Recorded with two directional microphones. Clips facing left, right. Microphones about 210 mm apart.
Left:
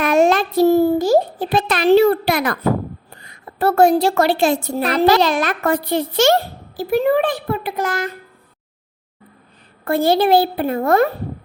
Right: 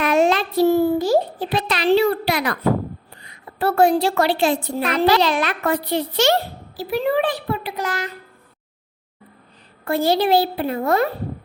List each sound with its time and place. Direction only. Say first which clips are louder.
0.0 s a sound: left 3 dB; 45° left (ahead or behind)
3.2 s a woman's voice: left 3 dB; 45° left (ahead or behind)
9.8 s a woman's voice: left 3 dB; 55° left (ahead or behind)